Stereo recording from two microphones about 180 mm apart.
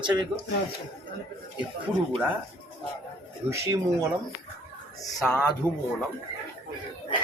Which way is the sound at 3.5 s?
15° right (ahead or behind).